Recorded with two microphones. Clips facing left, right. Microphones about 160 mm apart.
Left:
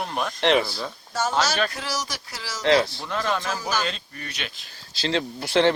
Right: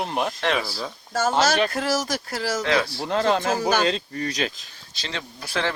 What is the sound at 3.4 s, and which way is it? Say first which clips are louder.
Speech: right 6 dB; 55° right (ahead or behind).